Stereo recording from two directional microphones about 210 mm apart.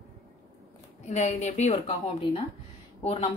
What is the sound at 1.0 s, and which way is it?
A woman's voice, 35° left (ahead or behind).